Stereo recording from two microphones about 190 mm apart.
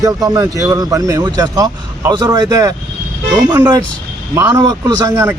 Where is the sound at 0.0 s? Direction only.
20° right (ahead or behind).